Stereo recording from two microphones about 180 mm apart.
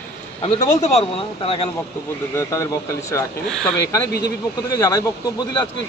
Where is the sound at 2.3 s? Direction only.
15° left (ahead or behind).